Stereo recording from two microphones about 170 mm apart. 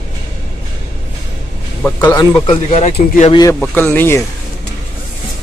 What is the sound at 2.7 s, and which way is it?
Speech, 40° left (ahead or behind).